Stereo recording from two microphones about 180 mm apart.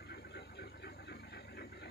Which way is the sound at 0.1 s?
65° left (ahead or behind).